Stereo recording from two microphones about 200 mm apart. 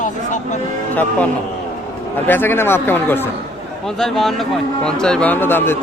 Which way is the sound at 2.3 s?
10° left (ahead or behind).